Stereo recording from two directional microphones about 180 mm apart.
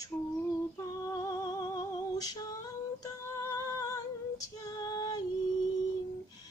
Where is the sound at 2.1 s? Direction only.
20° left (ahead or behind).